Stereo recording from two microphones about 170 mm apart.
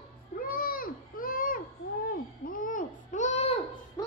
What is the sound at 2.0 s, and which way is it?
Babbling, 55° left (ahead or behind).